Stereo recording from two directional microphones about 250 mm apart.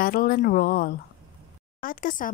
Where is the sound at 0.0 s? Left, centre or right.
Left.